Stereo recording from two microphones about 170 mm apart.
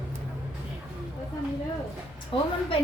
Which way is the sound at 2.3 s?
30° left (ahead or behind).